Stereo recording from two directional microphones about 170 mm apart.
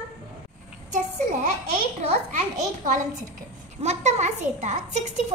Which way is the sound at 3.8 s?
40° right (ahead or behind).